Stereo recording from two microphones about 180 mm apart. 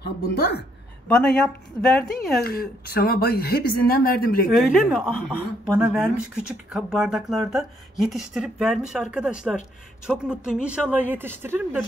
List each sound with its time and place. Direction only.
0.0 s speech: 65° left (ahead or behind)
1.0 s speech: 5° left (ahead or behind)
2.4 s speech: 55° left (ahead or behind)
4.6 s a woman's voice: centre (ahead or behind)